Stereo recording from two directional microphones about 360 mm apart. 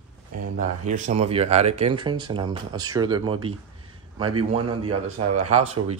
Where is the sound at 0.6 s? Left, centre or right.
Centre.